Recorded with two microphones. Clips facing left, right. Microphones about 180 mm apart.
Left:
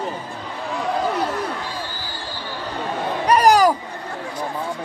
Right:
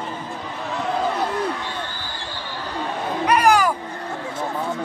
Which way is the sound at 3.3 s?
35° left (ahead or behind).